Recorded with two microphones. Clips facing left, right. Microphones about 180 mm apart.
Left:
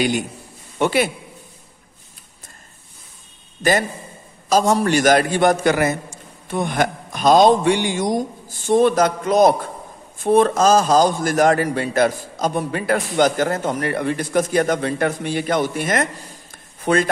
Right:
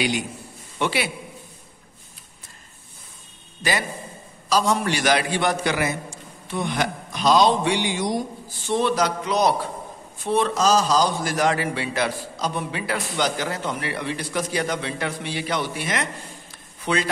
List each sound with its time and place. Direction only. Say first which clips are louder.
0.7 s a man's voice: left 6 dB; 45° left (ahead or behind)
4.5 s a man's voice: left 5 dB; 45° left (ahead or behind)